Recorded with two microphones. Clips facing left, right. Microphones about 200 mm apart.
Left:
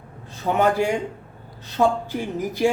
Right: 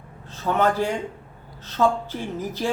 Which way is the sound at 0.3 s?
15° left (ahead or behind).